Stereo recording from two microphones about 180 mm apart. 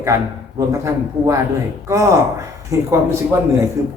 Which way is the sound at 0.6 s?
15° right (ahead or behind).